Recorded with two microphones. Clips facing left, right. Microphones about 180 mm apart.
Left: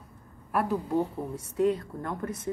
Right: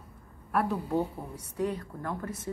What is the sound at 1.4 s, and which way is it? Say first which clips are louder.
Speech: left 6 dB; 25° left (ahead or behind).